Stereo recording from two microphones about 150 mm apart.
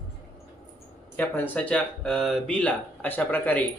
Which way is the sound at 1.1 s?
10° left (ahead or behind).